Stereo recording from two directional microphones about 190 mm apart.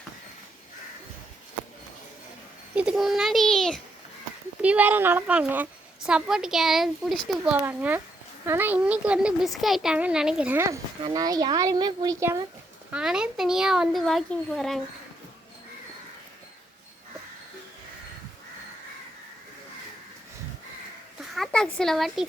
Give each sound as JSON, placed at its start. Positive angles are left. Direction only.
{"t": 2.7, "sound": "a woman's voice", "side_deg": -5}
{"t": 4.6, "sound": "a woman's voice", "side_deg": -10}
{"t": 12.9, "sound": "a woman's voice", "side_deg": -5}
{"t": 21.3, "sound": "a woman's voice", "side_deg": 5}